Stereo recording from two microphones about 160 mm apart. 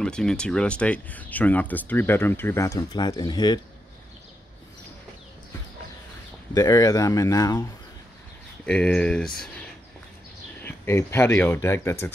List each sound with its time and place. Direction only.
0.0 s speech: 5° left (ahead or behind); by 3.6 s 25° left (ahead or behind)
6.5 s speech: 20° left (ahead or behind)
8.6 s speech: 5° left (ahead or behind)
10.6 s speech: 15° left (ahead or behind)